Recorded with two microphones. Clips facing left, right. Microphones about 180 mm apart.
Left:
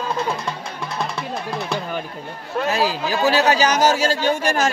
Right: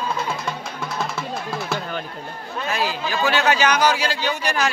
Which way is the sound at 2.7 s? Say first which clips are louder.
Left 3 dB; 35° left (ahead or behind).